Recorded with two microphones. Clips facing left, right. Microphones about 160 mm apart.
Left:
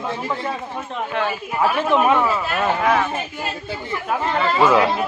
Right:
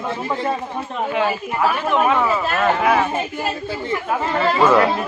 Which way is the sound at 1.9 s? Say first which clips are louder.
Left 2 dB; 20° left (ahead or behind).